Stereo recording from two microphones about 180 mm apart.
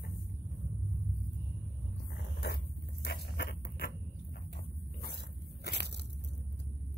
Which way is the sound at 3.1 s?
65° left (ahead or behind).